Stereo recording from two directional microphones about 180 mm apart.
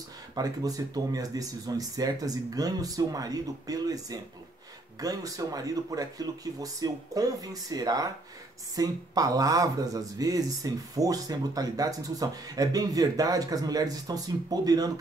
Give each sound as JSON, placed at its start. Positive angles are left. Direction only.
{"t": 0.3, "sound": "speech", "side_deg": -20}